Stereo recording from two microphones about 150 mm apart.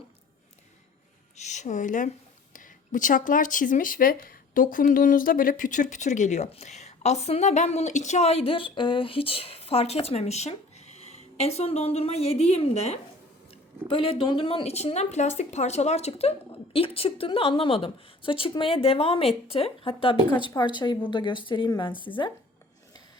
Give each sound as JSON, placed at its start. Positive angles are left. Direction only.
{"t": 1.4, "sound": "speech", "side_deg": 50}